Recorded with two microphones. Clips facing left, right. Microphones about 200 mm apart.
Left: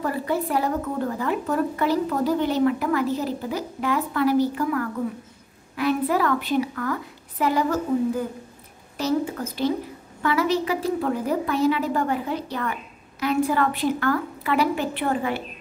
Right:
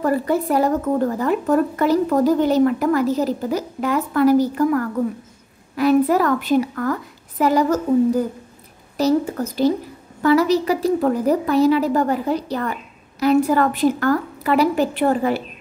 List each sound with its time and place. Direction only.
0.0 s a woman's voice: 45° right (ahead or behind)